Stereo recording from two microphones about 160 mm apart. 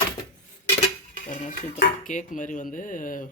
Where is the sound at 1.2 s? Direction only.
50° left (ahead or behind).